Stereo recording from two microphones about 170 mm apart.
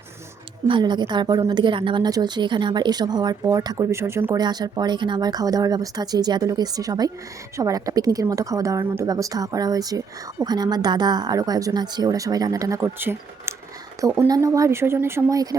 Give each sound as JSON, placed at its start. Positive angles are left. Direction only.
{"t": 0.7, "sound": "a woman's voice", "side_deg": -25}